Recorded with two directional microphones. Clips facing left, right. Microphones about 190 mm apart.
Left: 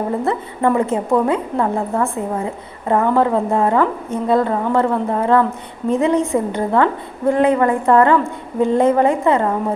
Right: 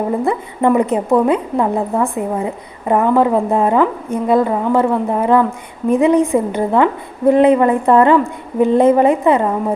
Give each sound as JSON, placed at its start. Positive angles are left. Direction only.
{"t": 0.3, "sound": "a woman's voice", "side_deg": -15}